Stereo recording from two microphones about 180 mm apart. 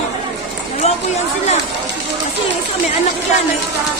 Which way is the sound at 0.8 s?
35° left (ahead or behind).